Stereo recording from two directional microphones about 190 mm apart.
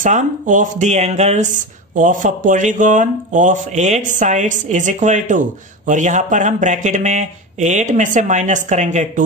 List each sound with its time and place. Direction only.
0.0 s speech: 40° right (ahead or behind)